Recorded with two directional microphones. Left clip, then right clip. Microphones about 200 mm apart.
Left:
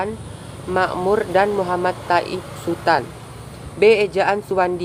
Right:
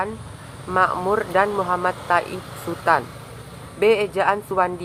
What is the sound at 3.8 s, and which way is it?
Speech, 20° left (ahead or behind).